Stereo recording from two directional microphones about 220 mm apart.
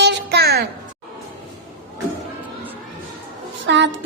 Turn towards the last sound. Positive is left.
turn(degrees=-55)  # may be behind; listen again after turning